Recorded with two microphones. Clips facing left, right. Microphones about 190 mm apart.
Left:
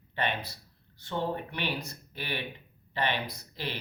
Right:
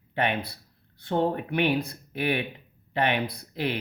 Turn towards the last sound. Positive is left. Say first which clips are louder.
# right 8 dB
turn(degrees=-55)  # may be behind; listen again after turning